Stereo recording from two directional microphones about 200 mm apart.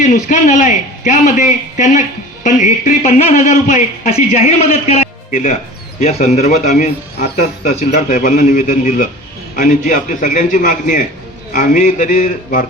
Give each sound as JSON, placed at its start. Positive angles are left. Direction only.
{"t": 0.0, "sound": "a man's voice", "side_deg": 40}